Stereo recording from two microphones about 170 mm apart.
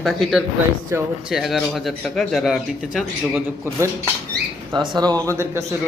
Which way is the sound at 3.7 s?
15° right (ahead or behind).